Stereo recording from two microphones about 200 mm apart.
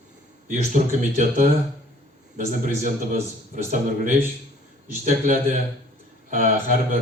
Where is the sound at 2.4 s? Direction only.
40° right (ahead or behind).